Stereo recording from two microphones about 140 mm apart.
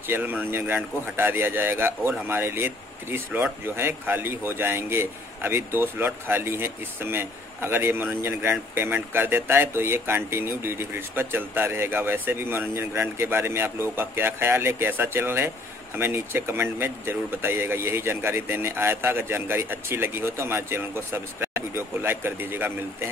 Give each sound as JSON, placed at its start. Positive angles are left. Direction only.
{"t": 0.1, "sound": "speech", "side_deg": -15}